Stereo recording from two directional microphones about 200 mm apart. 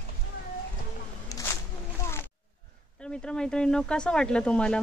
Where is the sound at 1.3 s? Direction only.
15° left (ahead or behind).